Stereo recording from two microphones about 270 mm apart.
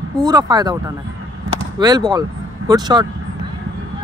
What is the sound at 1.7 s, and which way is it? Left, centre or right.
Speech, centre.